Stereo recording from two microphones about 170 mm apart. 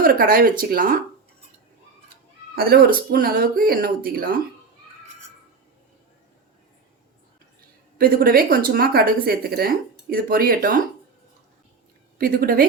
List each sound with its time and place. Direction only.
0.0 s a woman's voice: 60° right (ahead or behind)
2.6 s a woman's voice: 65° right (ahead or behind)
7.9 s a woman's voice: 60° right (ahead or behind)
12.1 s a woman's voice: 60° right (ahead or behind)